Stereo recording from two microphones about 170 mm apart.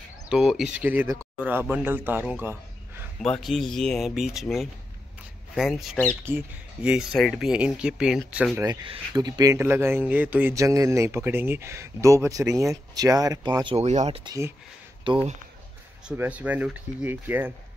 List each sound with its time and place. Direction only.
0.3 s speech: 5° right (ahead or behind)
3.2 s speech: centre (ahead or behind)
6.2 s speech: 10° right (ahead or behind)
9.1 s speech: 20° right (ahead or behind)
13.7 s speech: 40° right (ahead or behind)
14.2 s speech: 20° right (ahead or behind)
15.1 s speech: 30° right (ahead or behind)
16.1 s speech: 10° right (ahead or behind)